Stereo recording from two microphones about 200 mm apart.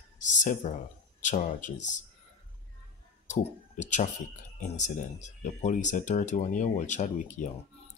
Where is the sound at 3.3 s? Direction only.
35° left (ahead or behind).